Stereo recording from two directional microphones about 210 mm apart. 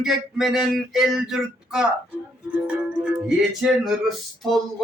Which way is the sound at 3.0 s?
5° right (ahead or behind).